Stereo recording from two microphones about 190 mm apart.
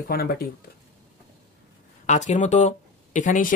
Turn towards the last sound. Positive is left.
turn(degrees=45)  # may be behind; listen again after turning